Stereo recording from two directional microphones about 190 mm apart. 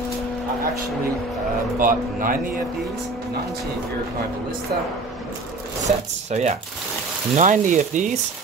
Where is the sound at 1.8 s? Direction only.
45° right (ahead or behind).